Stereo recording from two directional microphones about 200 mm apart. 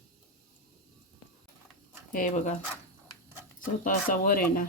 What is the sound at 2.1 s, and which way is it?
Speech, 40° left (ahead or behind).